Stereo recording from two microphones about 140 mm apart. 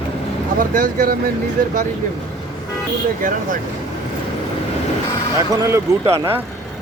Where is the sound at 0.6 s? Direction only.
75° right (ahead or behind).